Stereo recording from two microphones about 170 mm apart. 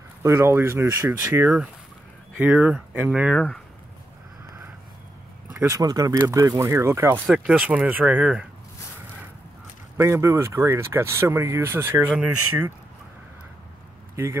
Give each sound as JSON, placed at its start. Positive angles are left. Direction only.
{"t": 0.2, "sound": "speech", "side_deg": -15}
{"t": 5.5, "sound": "speech", "side_deg": -15}
{"t": 9.9, "sound": "speech", "side_deg": -15}
{"t": 14.2, "sound": "speech", "side_deg": -15}